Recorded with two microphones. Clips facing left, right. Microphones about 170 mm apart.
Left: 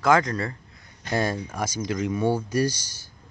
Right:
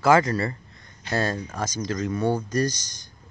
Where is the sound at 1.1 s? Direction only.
10° left (ahead or behind).